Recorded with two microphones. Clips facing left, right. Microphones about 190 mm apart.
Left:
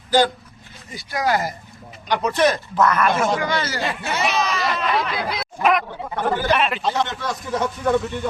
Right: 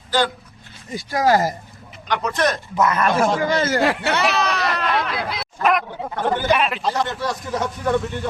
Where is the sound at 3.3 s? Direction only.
45° right (ahead or behind); by 4.2 s 65° right (ahead or behind).